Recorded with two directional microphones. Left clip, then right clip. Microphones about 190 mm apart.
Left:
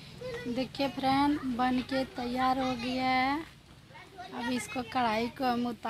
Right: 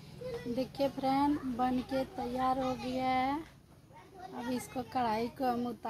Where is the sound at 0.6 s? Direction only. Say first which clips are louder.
Left 1 dB; 15° left (ahead or behind).